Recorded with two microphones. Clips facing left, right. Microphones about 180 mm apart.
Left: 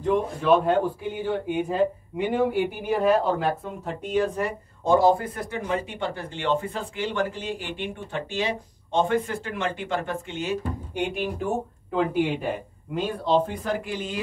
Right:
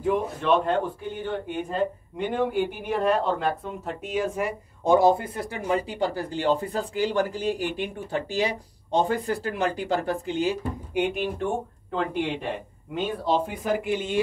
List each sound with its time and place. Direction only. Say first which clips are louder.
0.0 s speech: left 1 dB; 5° right (ahead or behind)
0.5 s speech: left 3 dB; 5° left (ahead or behind)
4.8 s speech: even; 20° right (ahead or behind)
11.0 s speech: right 2 dB; centre (ahead or behind)
13.8 s speech: right 6 dB; 25° right (ahead or behind)